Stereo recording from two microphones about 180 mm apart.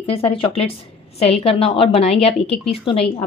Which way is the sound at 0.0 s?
30° left (ahead or behind).